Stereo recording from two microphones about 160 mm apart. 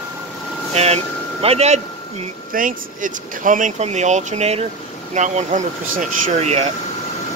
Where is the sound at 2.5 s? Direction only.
60° right (ahead or behind); by 6.7 s 45° right (ahead or behind).